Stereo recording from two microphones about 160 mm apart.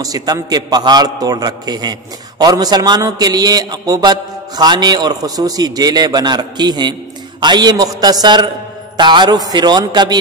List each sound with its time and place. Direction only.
0.0 s a man's voice: 25° right (ahead or behind)